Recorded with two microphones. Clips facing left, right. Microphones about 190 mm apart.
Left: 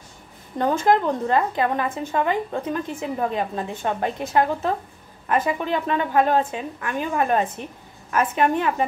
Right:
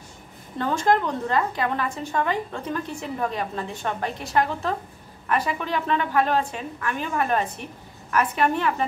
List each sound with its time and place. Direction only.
0.8 s a woman's voice: 20° left (ahead or behind)